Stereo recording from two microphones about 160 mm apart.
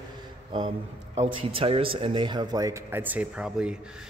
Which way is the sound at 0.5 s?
35° right (ahead or behind).